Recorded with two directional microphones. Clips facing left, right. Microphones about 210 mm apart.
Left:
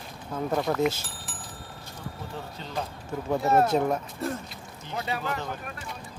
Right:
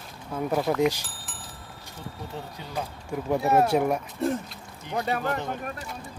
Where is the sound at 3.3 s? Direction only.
10° right (ahead or behind).